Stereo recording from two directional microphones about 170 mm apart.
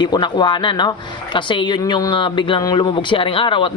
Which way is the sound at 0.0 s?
25° left (ahead or behind).